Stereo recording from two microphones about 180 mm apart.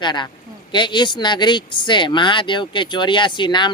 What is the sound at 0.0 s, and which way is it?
Speech, 25° left (ahead or behind).